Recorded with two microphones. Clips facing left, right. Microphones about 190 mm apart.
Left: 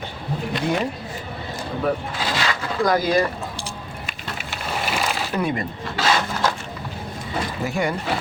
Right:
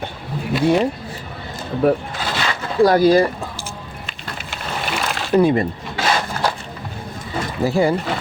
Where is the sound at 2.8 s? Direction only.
35° right (ahead or behind).